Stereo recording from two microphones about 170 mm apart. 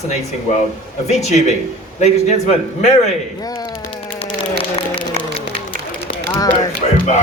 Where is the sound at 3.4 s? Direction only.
20° left (ahead or behind).